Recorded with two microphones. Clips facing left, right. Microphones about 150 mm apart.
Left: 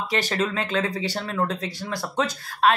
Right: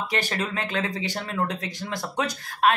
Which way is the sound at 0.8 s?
20° right (ahead or behind).